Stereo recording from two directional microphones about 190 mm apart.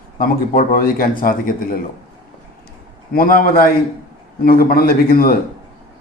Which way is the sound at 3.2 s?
50° left (ahead or behind).